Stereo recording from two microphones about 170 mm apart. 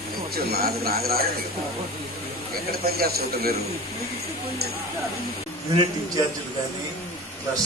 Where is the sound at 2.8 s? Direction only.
65° right (ahead or behind).